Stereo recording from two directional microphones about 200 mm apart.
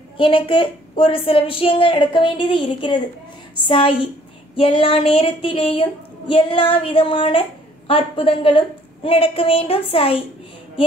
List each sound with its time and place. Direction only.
0.2 s a woman's voice: 25° left (ahead or behind)